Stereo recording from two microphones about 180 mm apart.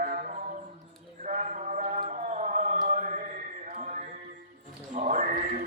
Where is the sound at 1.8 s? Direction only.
45° right (ahead or behind).